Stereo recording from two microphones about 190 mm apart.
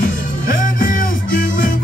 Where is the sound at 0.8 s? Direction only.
45° left (ahead or behind).